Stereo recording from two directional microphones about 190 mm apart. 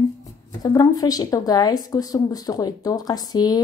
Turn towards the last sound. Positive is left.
turn(degrees=20)  # may be behind; listen again after turning